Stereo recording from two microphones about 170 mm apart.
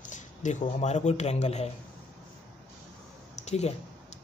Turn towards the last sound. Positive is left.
turn(degrees=40)  # may be behind; listen again after turning